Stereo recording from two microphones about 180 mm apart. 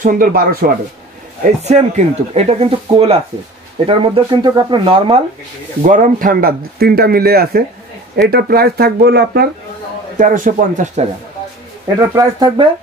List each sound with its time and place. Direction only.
0.0 s a man's voice: 50° right (ahead or behind)
1.6 s speech: 40° right (ahead or behind)
5.8 s speech: 45° right (ahead or behind); by 9.5 s 65° right (ahead or behind)
10.1 s a man's voice: 45° right (ahead or behind)
12.2 s speech: 20° right (ahead or behind)